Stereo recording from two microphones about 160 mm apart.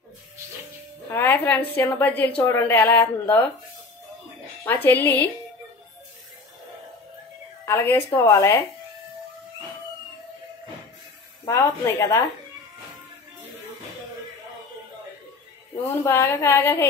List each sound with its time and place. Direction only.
1.1 s speech: 15° left (ahead or behind)
4.8 s speech: 10° left (ahead or behind)
7.6 s speech: 15° left (ahead or behind)
11.4 s speech: 15° left (ahead or behind)
15.9 s speech: 15° left (ahead or behind)